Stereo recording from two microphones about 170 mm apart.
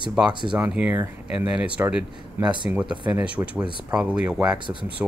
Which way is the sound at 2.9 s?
25° right (ahead or behind).